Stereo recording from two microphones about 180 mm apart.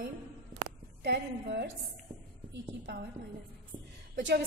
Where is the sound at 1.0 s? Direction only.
70° right (ahead or behind).